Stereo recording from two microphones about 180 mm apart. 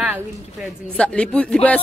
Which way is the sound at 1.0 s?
5° left (ahead or behind).